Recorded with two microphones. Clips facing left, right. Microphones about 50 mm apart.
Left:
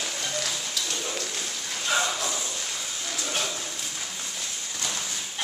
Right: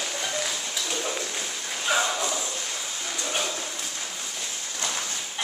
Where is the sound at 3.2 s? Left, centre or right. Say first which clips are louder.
Right 1 dB; centre.